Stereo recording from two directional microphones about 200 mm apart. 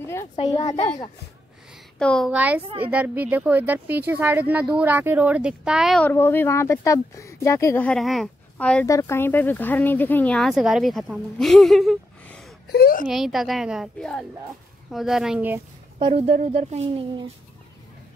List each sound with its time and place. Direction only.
0.0 s a sound: 15° left (ahead or behind)
0.5 s a child's voice: 20° left (ahead or behind)
2.0 s speech: 5° left (ahead or behind)
2.3 s speech: 10° right (ahead or behind)
6.0 s speech: 10° left (ahead or behind)
12.6 s speech: 50° left (ahead or behind)
13.1 s speech: centre (ahead or behind)
16.0 s speech: 30° right (ahead or behind)